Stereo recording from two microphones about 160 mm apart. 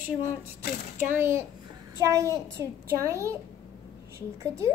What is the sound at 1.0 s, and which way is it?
A woman's voice, 15° right (ahead or behind).